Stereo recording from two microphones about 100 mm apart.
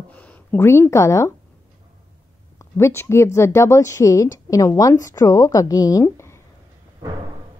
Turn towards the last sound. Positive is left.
turn(degrees=25)  # may be behind; listen again after turning